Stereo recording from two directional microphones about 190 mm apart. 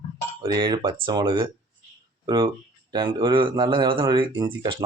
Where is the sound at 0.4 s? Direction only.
25° right (ahead or behind).